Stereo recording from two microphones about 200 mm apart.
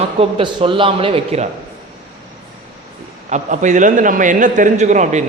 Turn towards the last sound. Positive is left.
turn(degrees=-35)  # may be behind; listen again after turning